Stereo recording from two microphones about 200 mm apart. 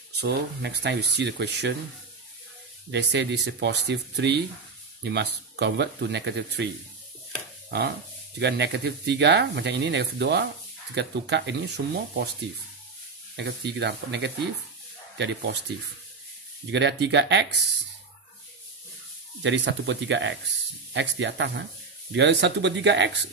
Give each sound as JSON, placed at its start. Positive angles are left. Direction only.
{"t": 0.2, "sound": "speech", "side_deg": -55}
{"t": 2.9, "sound": "speech", "side_deg": -60}
{"t": 7.7, "sound": "speech", "side_deg": -55}
{"t": 13.4, "sound": "speech", "side_deg": -60}
{"t": 16.7, "sound": "speech", "side_deg": -60}
{"t": 19.4, "sound": "speech", "side_deg": -65}